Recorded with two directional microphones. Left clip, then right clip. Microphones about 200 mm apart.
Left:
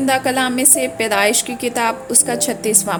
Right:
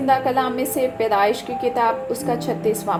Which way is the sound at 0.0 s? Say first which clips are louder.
Left 1 dB; 45° left (ahead or behind).